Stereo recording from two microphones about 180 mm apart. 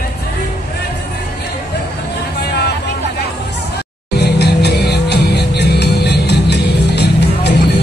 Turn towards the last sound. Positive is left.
turn(degrees=70)  # may be behind; listen again after turning